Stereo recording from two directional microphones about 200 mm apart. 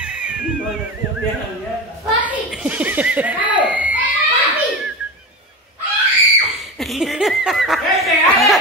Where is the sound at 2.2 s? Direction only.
5° right (ahead or behind).